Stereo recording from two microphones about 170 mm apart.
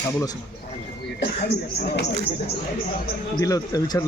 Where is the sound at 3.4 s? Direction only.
20° left (ahead or behind).